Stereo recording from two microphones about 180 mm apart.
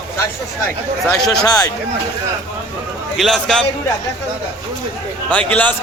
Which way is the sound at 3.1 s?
Centre (ahead or behind).